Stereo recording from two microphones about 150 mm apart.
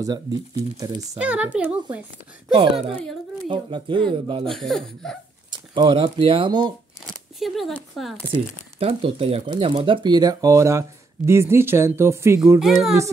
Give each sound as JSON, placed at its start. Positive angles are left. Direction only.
{"t": 0.0, "sound": "speech", "side_deg": -25}
{"t": 1.1, "sound": "speech", "side_deg": -10}
{"t": 2.6, "sound": "speech", "side_deg": -35}
{"t": 4.5, "sound": "speech", "side_deg": 0}
{"t": 5.5, "sound": "speech", "side_deg": -30}
{"t": 7.3, "sound": "speech", "side_deg": 0}
{"t": 8.7, "sound": "speech", "side_deg": -40}
{"t": 12.5, "sound": "speech", "side_deg": 0}